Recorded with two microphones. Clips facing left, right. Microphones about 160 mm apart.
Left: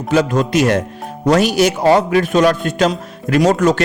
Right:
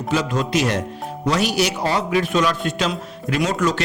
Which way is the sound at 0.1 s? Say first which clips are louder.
Left 6 dB; 50° left (ahead or behind).